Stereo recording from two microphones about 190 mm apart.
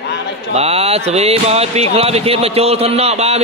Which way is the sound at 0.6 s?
30° right (ahead or behind).